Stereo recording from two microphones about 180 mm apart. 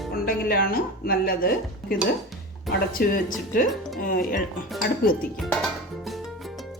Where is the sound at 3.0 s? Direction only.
55° left (ahead or behind).